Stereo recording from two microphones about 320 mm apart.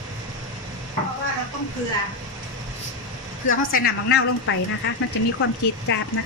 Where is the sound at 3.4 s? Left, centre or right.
Left.